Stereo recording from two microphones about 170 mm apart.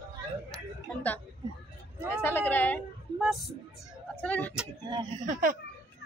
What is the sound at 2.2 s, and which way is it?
Speech, 15° left (ahead or behind).